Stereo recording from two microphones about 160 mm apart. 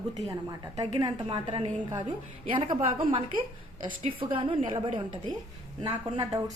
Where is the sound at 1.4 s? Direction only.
40° right (ahead or behind); by 6.4 s 20° right (ahead or behind).